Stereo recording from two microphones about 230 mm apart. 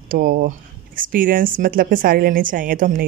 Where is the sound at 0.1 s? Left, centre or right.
Right.